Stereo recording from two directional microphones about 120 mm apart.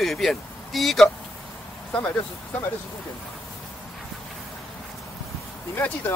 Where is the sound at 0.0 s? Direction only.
Centre (ahead or behind).